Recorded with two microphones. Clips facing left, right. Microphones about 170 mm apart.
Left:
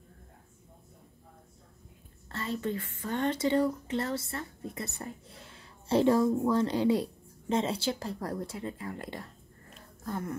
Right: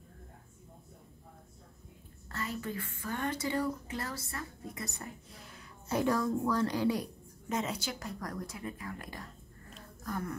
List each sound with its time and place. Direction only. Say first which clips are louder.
2.3 s speech: left 5 dB; 25° left (ahead or behind)